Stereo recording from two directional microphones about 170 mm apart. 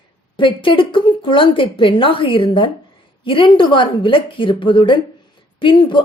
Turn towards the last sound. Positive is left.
turn(degrees=30)  # may be behind; listen again after turning